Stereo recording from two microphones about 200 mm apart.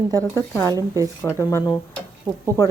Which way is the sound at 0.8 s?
15° right (ahead or behind).